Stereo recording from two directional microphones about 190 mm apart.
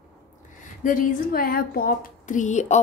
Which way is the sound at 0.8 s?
45° left (ahead or behind).